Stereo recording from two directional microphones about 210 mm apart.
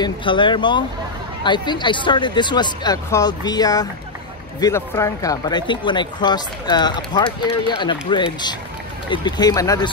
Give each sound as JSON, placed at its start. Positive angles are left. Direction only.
{"t": 0.0, "sound": "speech", "side_deg": 25}